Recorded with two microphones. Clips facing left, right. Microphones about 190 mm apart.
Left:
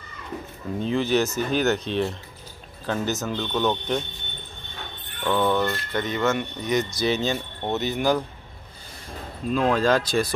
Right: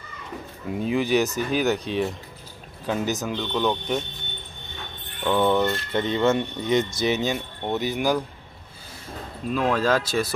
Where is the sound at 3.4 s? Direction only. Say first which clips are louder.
Even; centre (ahead or behind).